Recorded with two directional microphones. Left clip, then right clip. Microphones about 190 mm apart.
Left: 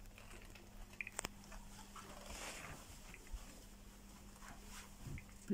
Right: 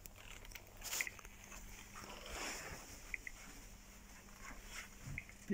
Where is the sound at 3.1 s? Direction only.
90° left.